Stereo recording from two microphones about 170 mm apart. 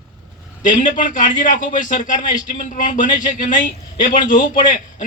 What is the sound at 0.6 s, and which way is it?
Speech, 50° left (ahead or behind).